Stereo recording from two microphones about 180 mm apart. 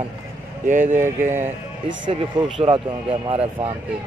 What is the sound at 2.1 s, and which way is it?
Speech, 30° right (ahead or behind).